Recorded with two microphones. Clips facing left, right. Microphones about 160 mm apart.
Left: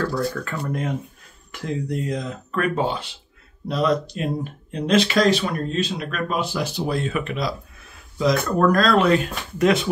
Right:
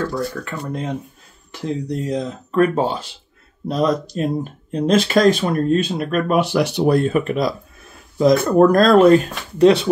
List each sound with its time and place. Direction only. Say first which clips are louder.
0.0 s speech: right 1 dB; 20° right (ahead or behind); by 7.1 s 60° right (ahead or behind)
7.1 s speech: right 6 dB; 40° right (ahead or behind)